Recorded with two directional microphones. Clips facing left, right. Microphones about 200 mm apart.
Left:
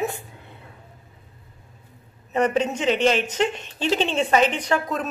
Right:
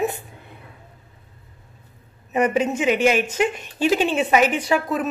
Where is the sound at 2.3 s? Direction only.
10° right (ahead or behind).